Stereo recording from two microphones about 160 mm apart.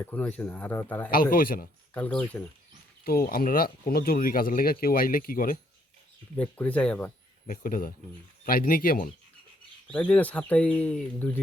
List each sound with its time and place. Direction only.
0.0 s speech: 10° left (ahead or behind)
1.1 s speech: 65° left (ahead or behind)
1.9 s speech: 10° left (ahead or behind)
3.0 s speech: 70° left (ahead or behind)
6.3 s speech: 10° left (ahead or behind)
7.4 s speech: 60° left (ahead or behind)
9.8 s speech: 10° left (ahead or behind)